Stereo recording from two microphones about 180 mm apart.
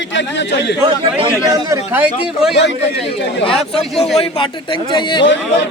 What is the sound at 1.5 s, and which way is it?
Speech, 15° right (ahead or behind).